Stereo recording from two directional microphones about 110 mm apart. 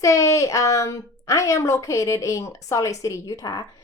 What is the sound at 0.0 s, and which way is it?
A woman's voice, 30° left (ahead or behind).